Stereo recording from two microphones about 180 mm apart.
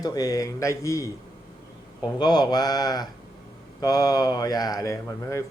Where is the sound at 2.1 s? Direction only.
25° left (ahead or behind).